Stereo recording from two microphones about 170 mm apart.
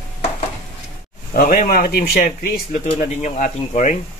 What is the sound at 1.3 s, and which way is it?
Speech, 55° left (ahead or behind).